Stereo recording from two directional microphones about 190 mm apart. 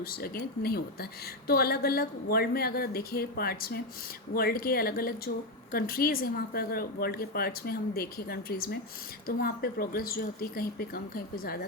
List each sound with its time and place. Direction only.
0.0 s a woman's voice: 50° left (ahead or behind)